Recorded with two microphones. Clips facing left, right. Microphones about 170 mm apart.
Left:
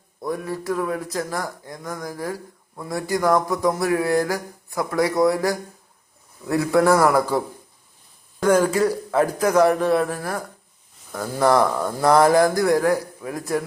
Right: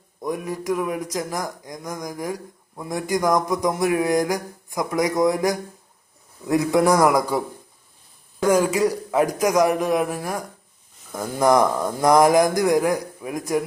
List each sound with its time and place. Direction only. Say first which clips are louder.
0.2 s speech: even; 15° right (ahead or behind)